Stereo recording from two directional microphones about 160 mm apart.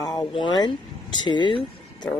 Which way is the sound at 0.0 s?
25° left (ahead or behind).